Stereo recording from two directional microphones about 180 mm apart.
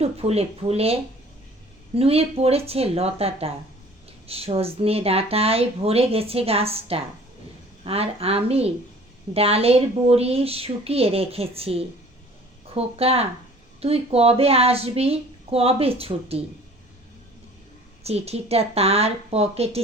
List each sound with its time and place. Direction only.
0.0 s speech: 35° right (ahead or behind)
2.0 s speech: 35° right (ahead or behind)
18.0 s speech: 35° right (ahead or behind)